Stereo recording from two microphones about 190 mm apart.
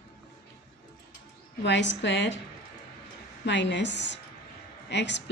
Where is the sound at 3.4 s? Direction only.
65° left (ahead or behind).